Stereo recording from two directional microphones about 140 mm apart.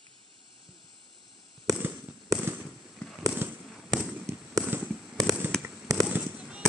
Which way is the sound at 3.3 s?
10° right (ahead or behind).